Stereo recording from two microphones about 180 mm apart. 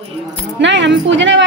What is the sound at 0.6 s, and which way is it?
Speech, 80° right.